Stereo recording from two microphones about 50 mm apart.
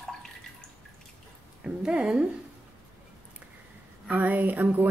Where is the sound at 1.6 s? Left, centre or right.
Centre.